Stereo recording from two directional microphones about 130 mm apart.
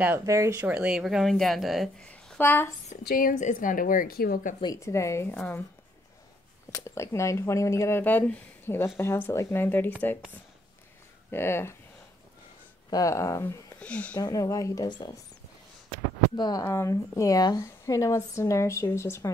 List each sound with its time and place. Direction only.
0.2 s speech: 25° right (ahead or behind)
0.7 s speech: 10° right (ahead or behind)
2.0 s a sound: 10° left (ahead or behind)
3.2 s a woman's voice: 80° left
4.7 s speech: 20° left (ahead or behind)
6.7 s speech: 20° left (ahead or behind)
11.2 s speech: 15° left (ahead or behind)
12.9 s speech: 25° left (ahead or behind)
13.7 s speech: 10° left (ahead or behind)
14.1 s speech: 30° left (ahead or behind)
16.3 s speech: 30° left (ahead or behind)
16.6 s speech: 20° left (ahead or behind)